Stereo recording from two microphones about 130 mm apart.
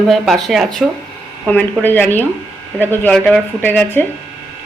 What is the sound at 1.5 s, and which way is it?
Speech, 15° left (ahead or behind).